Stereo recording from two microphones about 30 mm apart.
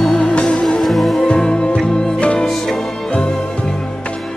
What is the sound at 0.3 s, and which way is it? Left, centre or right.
Music, left.